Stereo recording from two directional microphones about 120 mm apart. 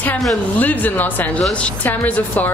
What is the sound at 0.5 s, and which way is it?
Music, 15° left (ahead or behind).